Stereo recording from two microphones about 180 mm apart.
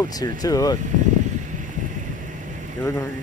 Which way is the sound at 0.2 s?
20° left (ahead or behind).